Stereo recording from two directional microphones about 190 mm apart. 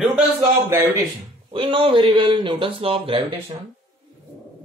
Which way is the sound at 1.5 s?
25° right (ahead or behind).